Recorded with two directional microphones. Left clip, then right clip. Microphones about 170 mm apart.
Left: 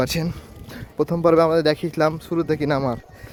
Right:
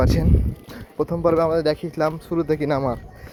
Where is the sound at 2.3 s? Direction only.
25° left (ahead or behind).